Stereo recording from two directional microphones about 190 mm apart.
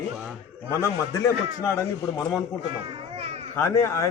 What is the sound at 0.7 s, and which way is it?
A man's voice, 15° left (ahead or behind).